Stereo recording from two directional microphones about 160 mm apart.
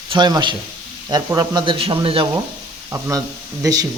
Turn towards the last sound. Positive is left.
turn(degrees=-20)  # may be behind; listen again after turning